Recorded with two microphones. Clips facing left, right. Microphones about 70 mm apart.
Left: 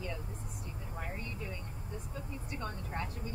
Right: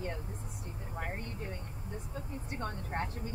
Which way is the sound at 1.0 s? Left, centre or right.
Right.